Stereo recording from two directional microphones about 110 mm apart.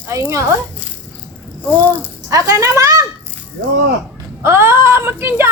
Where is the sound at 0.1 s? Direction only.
25° right (ahead or behind).